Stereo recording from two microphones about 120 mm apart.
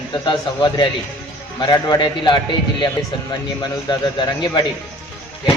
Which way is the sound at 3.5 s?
35° left (ahead or behind).